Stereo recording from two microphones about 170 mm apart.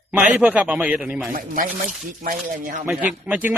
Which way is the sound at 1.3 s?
55° right (ahead or behind).